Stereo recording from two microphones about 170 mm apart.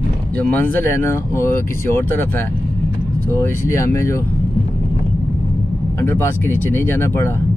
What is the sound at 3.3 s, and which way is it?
Speech, 15° left (ahead or behind).